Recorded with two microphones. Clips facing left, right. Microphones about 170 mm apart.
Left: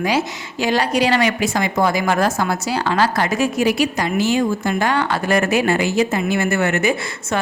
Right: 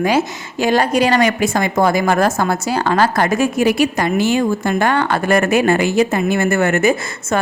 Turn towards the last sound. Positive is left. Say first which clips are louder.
# right 4 dB
turn(degrees=-45)  # may be behind; listen again after turning